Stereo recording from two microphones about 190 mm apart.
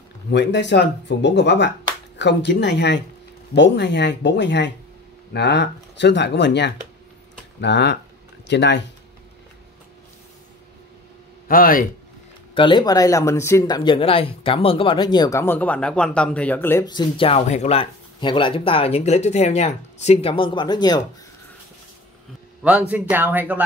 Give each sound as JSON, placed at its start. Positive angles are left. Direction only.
{"t": 0.3, "sound": "speech", "side_deg": 65}
{"t": 11.4, "sound": "a man's voice", "side_deg": 50}
{"t": 12.5, "sound": "speech", "side_deg": 25}
{"t": 22.6, "sound": "speech", "side_deg": -5}